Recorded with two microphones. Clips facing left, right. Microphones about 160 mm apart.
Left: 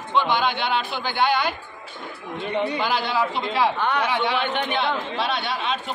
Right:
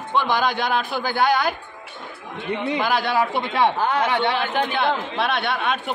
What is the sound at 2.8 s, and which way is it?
A man's voice, 55° right (ahead or behind).